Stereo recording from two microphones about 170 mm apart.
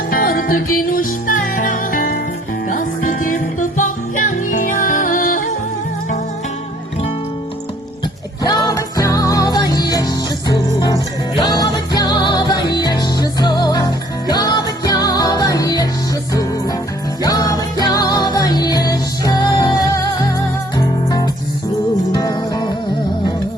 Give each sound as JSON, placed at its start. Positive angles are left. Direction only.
{"t": 0.1, "sound": "music", "side_deg": 55}
{"t": 8.4, "sound": "music", "side_deg": 20}
{"t": 17.2, "sound": "music", "side_deg": 20}